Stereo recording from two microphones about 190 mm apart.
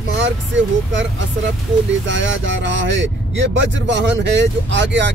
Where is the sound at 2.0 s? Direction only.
75° right (ahead or behind).